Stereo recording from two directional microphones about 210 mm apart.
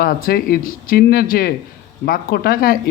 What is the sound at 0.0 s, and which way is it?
A man's voice, 45° left (ahead or behind).